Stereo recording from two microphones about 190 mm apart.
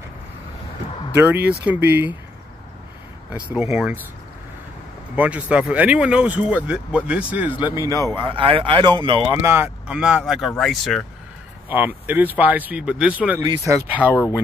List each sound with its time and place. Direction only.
1.1 s speech: 10° right (ahead or behind)
3.3 s speech: 10° right (ahead or behind)
5.1 s speech: 5° right (ahead or behind); by 9.4 s 25° right (ahead or behind)
9.4 s speech: 10° right (ahead or behind)